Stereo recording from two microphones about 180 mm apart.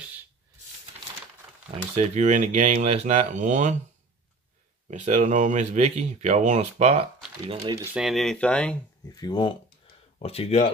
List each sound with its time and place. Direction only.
1.7 s speech: 35° right (ahead or behind)
4.8 s speech: 40° right (ahead or behind)
7.6 s speech: 20° right (ahead or behind)
7.9 s speech: centre (ahead or behind)
9.1 s speech: 25° left (ahead or behind)